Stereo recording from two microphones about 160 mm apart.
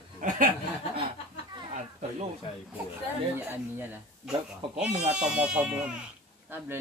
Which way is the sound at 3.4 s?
10° right (ahead or behind).